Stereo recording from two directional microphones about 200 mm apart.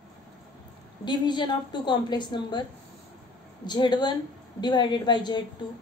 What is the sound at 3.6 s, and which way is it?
A woman's voice, 20° left (ahead or behind).